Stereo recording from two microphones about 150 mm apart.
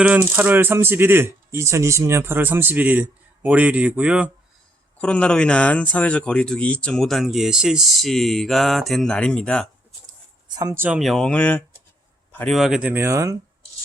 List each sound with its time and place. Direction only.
0.0 s speech: 10° right (ahead or behind)
4.9 s speech: 5° left (ahead or behind)
10.5 s speech: 25° right (ahead or behind)
10.8 s a man's voice: 10° right (ahead or behind); by 12.5 s 10° left (ahead or behind)
12.5 s speech: 5° right (ahead or behind); by 13.3 s 20° right (ahead or behind)